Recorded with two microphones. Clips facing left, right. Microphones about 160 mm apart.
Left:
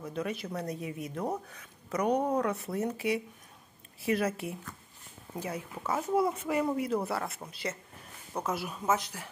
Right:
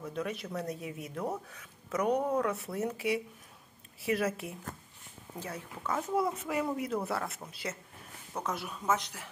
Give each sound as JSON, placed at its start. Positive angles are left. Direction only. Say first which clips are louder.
{"t": 0.0, "sound": "speech", "louder": "left 1 dB", "side_deg": 0}
{"t": 4.0, "sound": "speech", "louder": "left 2 dB", "side_deg": 0}
{"t": 5.3, "sound": "speech", "louder": "left 4 dB", "side_deg": 10}